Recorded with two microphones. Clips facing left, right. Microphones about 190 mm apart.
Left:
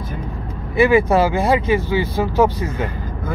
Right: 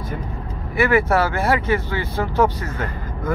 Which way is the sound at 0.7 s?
15° left (ahead or behind).